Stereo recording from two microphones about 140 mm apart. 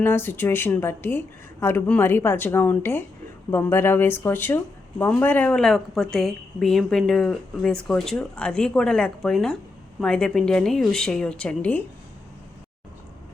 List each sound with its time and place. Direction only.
0.0 s a woman's voice: 15° left (ahead or behind)